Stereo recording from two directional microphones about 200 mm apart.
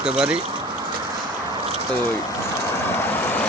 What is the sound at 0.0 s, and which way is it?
Speech, 5° right (ahead or behind).